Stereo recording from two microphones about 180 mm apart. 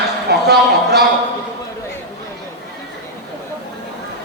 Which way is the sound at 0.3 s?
65° right (ahead or behind).